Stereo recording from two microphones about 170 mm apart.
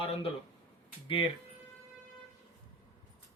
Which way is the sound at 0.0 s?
35° left (ahead or behind).